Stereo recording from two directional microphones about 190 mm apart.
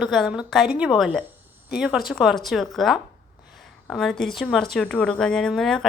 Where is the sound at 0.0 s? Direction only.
Centre (ahead or behind).